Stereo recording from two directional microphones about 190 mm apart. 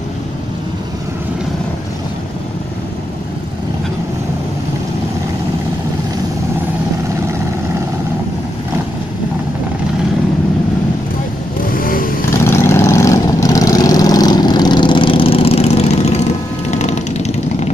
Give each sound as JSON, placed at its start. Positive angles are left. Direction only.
{"t": 11.6, "sound": "vehicle", "side_deg": 50}
{"t": 12.4, "sound": "vehicle", "side_deg": 15}